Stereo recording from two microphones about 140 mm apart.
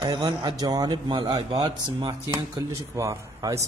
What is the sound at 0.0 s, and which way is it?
Speech, 30° right (ahead or behind).